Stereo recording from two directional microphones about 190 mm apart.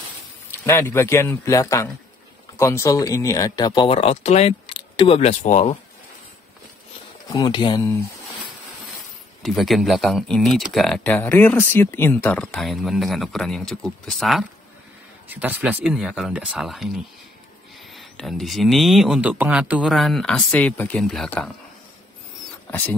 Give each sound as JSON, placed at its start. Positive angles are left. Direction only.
{"t": 0.7, "sound": "a man's voice", "side_deg": 15}
{"t": 7.3, "sound": "speech", "side_deg": 25}
{"t": 9.4, "sound": "speech", "side_deg": 0}
{"t": 22.7, "sound": "speech", "side_deg": 10}